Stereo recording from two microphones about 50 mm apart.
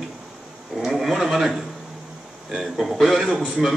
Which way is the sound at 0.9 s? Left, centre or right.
Centre.